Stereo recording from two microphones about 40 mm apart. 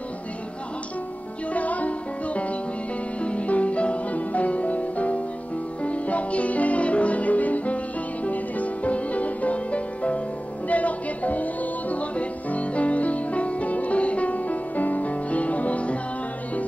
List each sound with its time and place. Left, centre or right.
1.5 s music: left